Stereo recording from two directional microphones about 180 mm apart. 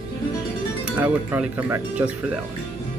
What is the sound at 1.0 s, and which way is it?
Speech, 10° right (ahead or behind).